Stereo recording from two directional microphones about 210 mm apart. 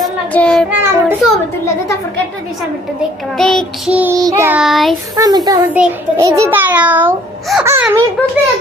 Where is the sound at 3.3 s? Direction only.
Centre (ahead or behind).